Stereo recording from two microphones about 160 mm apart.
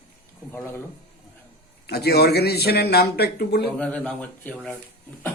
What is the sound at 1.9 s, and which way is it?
Speech, 90° left.